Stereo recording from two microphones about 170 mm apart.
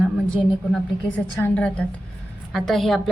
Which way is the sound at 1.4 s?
10° left (ahead or behind).